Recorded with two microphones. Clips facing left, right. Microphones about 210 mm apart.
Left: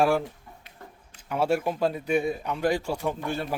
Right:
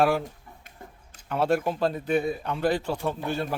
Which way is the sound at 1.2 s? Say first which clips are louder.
Right 1 dB; 10° left (ahead or behind).